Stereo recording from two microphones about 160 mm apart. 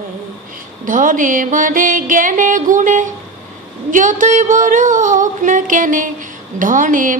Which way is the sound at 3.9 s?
55° right (ahead or behind).